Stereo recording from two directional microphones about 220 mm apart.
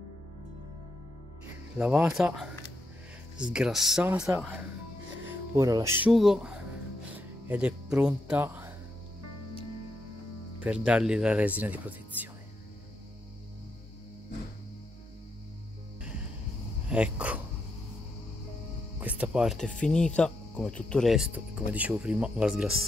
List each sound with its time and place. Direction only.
1.8 s speech: 5° right (ahead or behind)
7.1 s music: 5° right (ahead or behind)
10.6 s speech: 5° right (ahead or behind)
16.9 s speech: 5° right (ahead or behind)
18.9 s speech: 5° right (ahead or behind)